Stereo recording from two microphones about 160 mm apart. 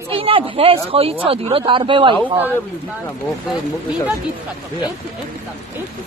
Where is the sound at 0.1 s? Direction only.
35° right (ahead or behind).